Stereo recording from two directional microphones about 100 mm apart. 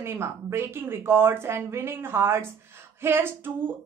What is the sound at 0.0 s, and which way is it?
A woman's voice, 25° right (ahead or behind).